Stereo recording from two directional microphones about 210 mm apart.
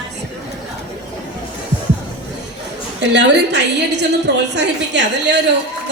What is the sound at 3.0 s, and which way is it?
A woman's voice, 60° right (ahead or behind).